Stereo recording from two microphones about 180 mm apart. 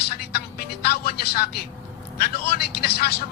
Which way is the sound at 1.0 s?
60° left (ahead or behind).